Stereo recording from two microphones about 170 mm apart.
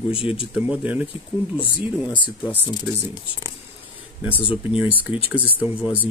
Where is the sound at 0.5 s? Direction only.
5° right (ahead or behind).